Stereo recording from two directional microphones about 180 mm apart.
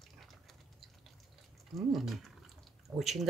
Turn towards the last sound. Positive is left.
turn(degrees=0)  # may be behind; listen again after turning